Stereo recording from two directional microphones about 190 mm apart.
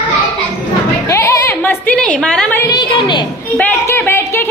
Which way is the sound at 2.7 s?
20° left (ahead or behind).